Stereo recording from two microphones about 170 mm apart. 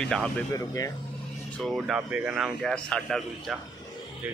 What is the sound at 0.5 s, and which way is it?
Speech, 20° left (ahead or behind).